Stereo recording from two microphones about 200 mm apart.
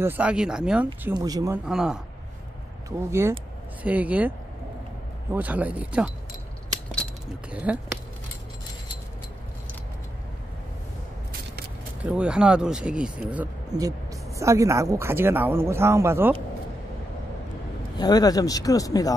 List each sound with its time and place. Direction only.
0.0 s speech: 10° right (ahead or behind)
1.0 s speech: 20° right (ahead or behind)
1.7 s speech: 5° right (ahead or behind)
3.1 s speech: 10° right (ahead or behind)
5.3 s speech: 10° right (ahead or behind)
7.5 s speech: 5° right (ahead or behind)
12.0 s speech: 5° right (ahead or behind)
17.9 s speech: 20° left (ahead or behind)